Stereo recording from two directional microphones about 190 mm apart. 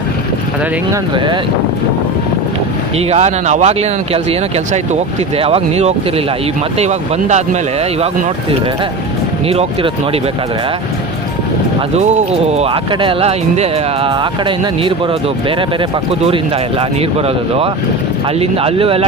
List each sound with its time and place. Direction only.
1.1 s speech: 25° right (ahead or behind)
3.1 s speech: 35° right (ahead or behind)
9.5 s speech: 30° right (ahead or behind)
11.9 s speech: 35° right (ahead or behind)